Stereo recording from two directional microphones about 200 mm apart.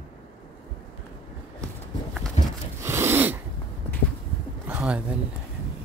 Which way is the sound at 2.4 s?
35° left (ahead or behind).